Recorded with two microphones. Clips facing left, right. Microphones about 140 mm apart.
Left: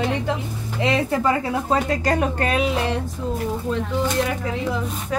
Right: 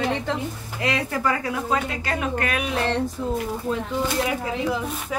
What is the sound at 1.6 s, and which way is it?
A woman's voice, 40° left (ahead or behind).